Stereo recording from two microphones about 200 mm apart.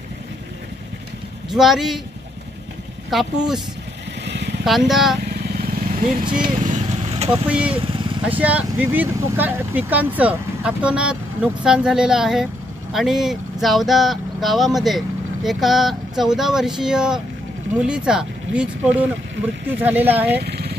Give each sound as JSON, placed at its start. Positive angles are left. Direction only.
{"t": 1.5, "sound": "speech", "side_deg": 0}
{"t": 3.1, "sound": "speech", "side_deg": 0}
{"t": 4.2, "sound": "vehicle", "side_deg": -60}
{"t": 4.6, "sound": "speech", "side_deg": 0}
{"t": 6.3, "sound": "vehicle", "side_deg": -40}
{"t": 7.2, "sound": "speech", "side_deg": -5}
{"t": 7.8, "sound": "vehicle", "side_deg": -25}
{"t": 8.3, "sound": "speech", "side_deg": -10}
{"t": 20.4, "sound": "vehicle", "side_deg": -55}